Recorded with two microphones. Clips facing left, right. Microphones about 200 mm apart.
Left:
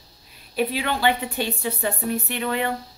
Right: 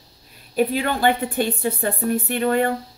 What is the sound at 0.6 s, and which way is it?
A woman's voice, 45° right (ahead or behind).